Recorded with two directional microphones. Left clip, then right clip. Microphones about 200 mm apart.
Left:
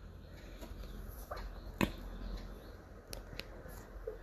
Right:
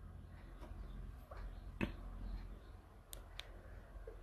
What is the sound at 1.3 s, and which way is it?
Finger snapping, 35° left (ahead or behind).